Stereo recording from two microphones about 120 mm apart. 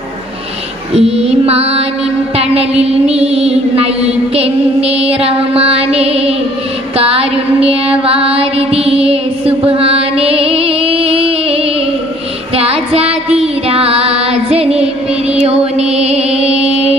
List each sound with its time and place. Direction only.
0.9 s mantra: 55° right (ahead or behind)
6.9 s music: 55° right (ahead or behind)
12.5 s child singing: 55° right (ahead or behind)
15.4 s music: 60° right (ahead or behind)